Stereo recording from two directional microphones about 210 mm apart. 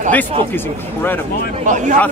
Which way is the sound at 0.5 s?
10° left (ahead or behind).